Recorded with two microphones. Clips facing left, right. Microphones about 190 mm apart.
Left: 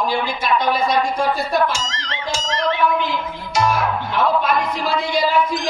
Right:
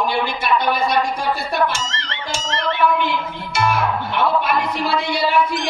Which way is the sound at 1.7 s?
60° right (ahead or behind).